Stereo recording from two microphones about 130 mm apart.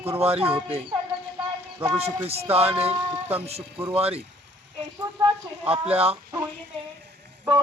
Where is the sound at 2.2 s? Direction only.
50° right (ahead or behind).